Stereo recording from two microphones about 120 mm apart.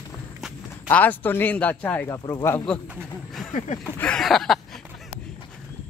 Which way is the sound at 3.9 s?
5° left (ahead or behind).